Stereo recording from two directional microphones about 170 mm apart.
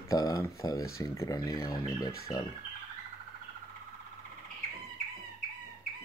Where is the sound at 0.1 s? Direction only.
20° left (ahead or behind).